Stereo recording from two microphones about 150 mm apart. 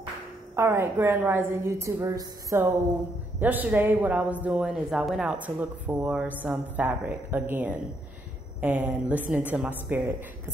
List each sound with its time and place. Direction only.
0.6 s speech: 15° right (ahead or behind)